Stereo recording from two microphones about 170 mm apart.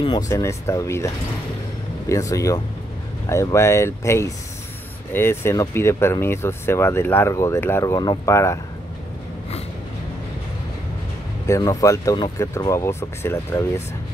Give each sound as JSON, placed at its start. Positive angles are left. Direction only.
{"t": 0.3, "sound": "speech", "side_deg": 15}
{"t": 11.4, "sound": "speech", "side_deg": 20}